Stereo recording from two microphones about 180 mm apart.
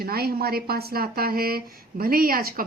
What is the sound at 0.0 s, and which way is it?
Speech, 60° right (ahead or behind).